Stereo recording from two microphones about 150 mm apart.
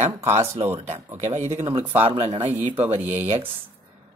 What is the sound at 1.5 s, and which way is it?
Speech, 40° right (ahead or behind).